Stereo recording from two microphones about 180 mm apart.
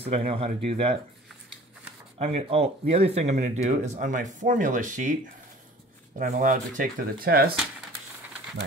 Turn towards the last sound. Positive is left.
turn(degrees=-55)  # may be behind; listen again after turning